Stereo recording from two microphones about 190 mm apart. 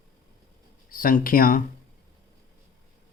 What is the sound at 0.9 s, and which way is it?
Speech, 45° left (ahead or behind).